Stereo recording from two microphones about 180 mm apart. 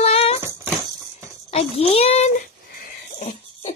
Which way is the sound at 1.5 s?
35° left (ahead or behind).